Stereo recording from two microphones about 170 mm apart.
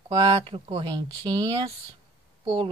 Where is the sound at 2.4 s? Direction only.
30° right (ahead or behind).